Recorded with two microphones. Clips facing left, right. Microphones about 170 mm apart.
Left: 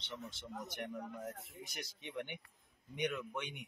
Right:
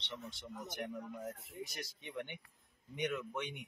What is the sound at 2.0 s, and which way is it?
Speech, centre (ahead or behind).